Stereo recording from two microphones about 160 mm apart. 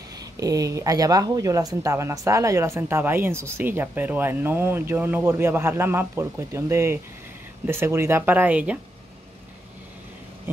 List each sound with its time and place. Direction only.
0.2 s speech: 20° right (ahead or behind)